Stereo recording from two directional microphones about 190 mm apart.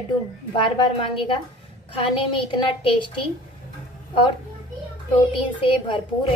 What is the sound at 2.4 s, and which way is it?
Speech, 25° left (ahead or behind).